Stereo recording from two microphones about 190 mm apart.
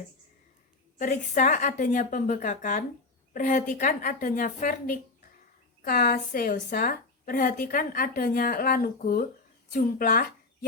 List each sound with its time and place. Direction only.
0.9 s a woman's voice: 40° left (ahead or behind)